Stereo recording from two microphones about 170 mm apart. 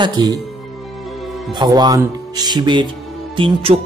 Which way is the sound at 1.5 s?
25° right (ahead or behind).